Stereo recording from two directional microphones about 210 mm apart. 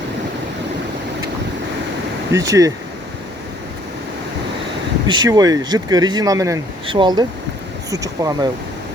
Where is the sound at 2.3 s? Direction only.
15° right (ahead or behind).